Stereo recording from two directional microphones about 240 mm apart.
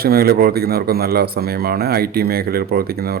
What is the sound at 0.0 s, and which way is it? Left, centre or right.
A man's voice, right.